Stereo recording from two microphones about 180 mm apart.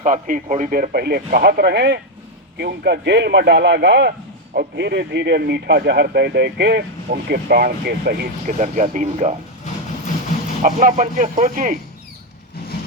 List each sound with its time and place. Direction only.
0.0 s a man's voice: 45° right (ahead or behind); by 8.3 s 60° right (ahead or behind)
8.4 s speech: 45° right (ahead or behind)
10.6 s speech: 45° right (ahead or behind)